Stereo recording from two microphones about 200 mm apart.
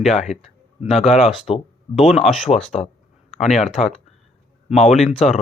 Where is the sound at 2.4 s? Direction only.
30° left (ahead or behind).